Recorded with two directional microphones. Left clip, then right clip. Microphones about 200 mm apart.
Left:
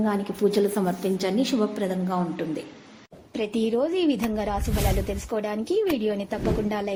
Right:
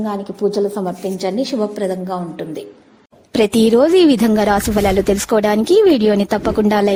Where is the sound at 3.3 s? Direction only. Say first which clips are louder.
Right 13 dB; 65° right (ahead or behind).